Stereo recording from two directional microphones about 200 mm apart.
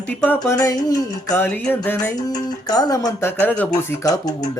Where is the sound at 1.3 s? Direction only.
10° left (ahead or behind).